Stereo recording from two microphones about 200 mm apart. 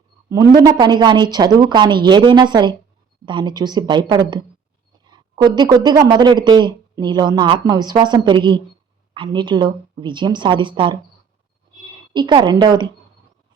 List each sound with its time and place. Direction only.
0.3 s speech: 20° right (ahead or behind)
12.1 s speech: 25° right (ahead or behind)